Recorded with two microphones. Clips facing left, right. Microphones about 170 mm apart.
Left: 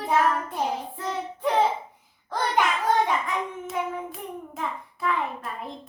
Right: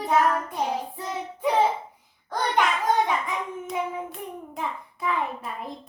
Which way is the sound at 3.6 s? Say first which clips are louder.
Even; centre (ahead or behind).